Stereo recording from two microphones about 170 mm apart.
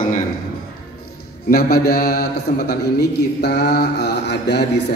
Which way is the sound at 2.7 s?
70° left (ahead or behind).